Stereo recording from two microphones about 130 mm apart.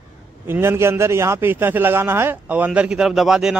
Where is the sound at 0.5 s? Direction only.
20° right (ahead or behind).